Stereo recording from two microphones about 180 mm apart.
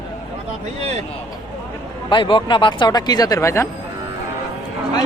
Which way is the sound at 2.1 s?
30° left (ahead or behind).